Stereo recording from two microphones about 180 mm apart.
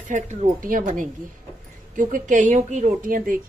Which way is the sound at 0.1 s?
45° right (ahead or behind).